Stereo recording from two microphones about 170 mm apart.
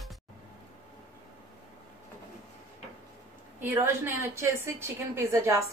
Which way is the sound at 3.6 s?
10° right (ahead or behind).